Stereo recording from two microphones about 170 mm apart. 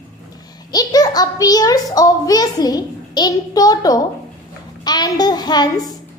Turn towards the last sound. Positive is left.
turn(degrees=25)  # may be behind; listen again after turning